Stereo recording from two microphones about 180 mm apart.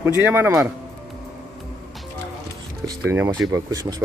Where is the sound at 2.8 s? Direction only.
15° right (ahead or behind).